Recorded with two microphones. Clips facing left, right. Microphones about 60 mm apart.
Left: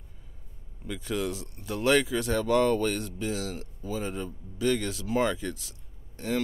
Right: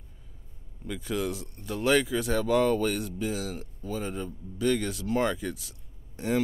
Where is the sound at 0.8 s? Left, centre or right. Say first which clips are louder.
Even; centre.